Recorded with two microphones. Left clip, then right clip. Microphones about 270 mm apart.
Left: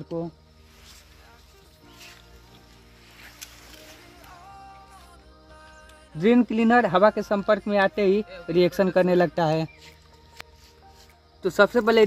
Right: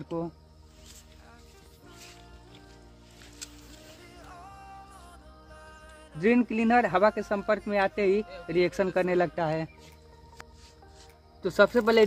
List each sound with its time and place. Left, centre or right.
6.1 s speech: left
11.4 s speech: left